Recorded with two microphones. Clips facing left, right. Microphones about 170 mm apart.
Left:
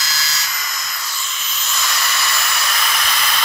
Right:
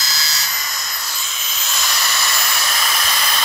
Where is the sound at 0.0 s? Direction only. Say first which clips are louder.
Left 1 dB; 30° right (ahead or behind).